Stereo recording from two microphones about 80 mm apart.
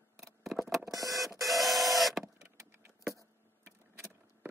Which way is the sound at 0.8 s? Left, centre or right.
Right.